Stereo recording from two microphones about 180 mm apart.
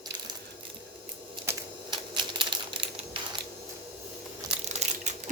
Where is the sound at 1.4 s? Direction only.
15° right (ahead or behind).